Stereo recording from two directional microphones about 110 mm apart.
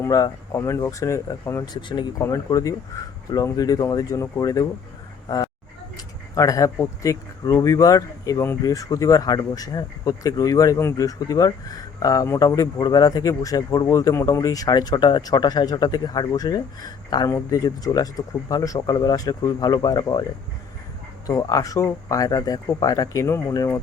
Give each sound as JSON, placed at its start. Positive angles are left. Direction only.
{"t": 0.0, "sound": "speech", "side_deg": 30}
{"t": 1.6, "sound": "speech", "side_deg": 40}
{"t": 6.3, "sound": "speech", "side_deg": 30}
{"t": 21.2, "sound": "speech", "side_deg": 35}